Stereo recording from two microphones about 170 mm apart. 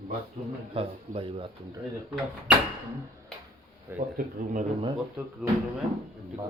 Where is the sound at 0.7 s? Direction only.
30° right (ahead or behind).